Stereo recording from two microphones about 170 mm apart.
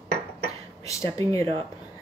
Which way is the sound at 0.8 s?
20° left (ahead or behind).